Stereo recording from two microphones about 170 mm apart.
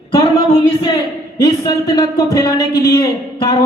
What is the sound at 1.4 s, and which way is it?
A man's voice, 20° left (ahead or behind).